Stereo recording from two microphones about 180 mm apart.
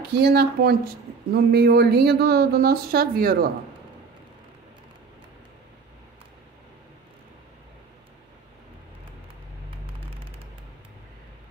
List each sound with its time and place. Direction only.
0.1 s a woman's voice: 60° right (ahead or behind)